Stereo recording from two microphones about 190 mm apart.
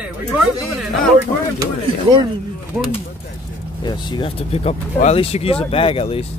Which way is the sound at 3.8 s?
20° left (ahead or behind).